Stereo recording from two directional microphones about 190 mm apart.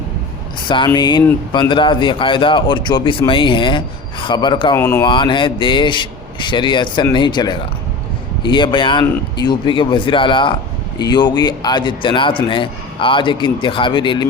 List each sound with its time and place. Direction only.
0.9 s speech: 25° left (ahead or behind)
4.8 s speech: 15° left (ahead or behind)
5.0 s speech: 25° left (ahead or behind)